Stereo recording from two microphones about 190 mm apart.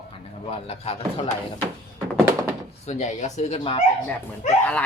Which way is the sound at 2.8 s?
35° left (ahead or behind).